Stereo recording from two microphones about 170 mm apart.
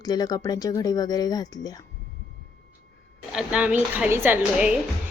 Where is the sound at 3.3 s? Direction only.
5° right (ahead or behind).